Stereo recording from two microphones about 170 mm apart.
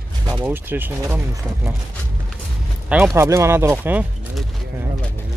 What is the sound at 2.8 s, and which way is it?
Speech, 10° right (ahead or behind).